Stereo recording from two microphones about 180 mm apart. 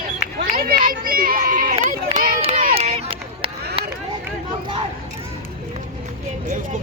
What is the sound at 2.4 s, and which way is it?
Run, 35° right (ahead or behind).